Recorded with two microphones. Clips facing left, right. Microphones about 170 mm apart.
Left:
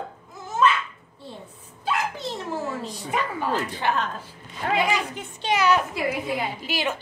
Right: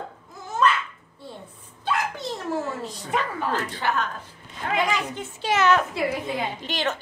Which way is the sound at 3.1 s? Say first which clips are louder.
Even; 5° left (ahead or behind).